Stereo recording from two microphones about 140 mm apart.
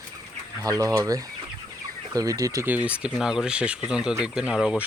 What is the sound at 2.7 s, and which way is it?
Speech, 10° right (ahead or behind).